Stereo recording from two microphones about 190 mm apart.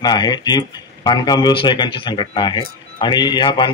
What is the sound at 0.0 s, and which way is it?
Speech, 20° left (ahead or behind).